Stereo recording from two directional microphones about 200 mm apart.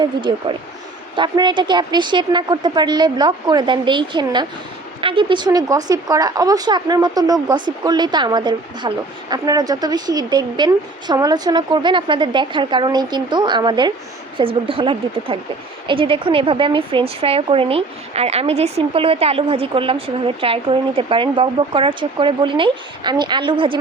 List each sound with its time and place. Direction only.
0.0 s a woman's voice: 20° right (ahead or behind)